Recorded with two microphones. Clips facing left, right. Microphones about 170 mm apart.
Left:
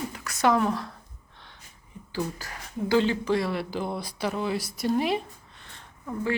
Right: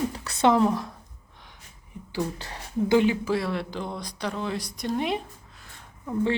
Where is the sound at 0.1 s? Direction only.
30° right (ahead or behind).